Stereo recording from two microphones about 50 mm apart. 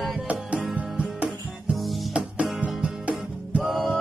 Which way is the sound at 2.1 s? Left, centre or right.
Right.